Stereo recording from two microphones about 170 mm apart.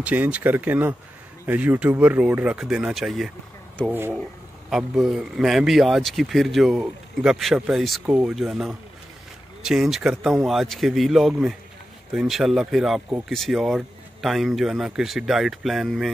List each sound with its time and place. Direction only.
0.0 s speech: 10° right (ahead or behind)
4.6 s speech: centre (ahead or behind)